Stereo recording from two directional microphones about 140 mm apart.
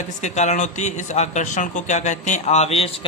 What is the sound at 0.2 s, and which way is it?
Speech, 55° left (ahead or behind).